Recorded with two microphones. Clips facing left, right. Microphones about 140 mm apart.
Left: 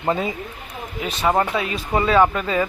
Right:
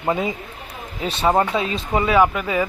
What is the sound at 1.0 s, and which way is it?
Speech, 30° right (ahead or behind).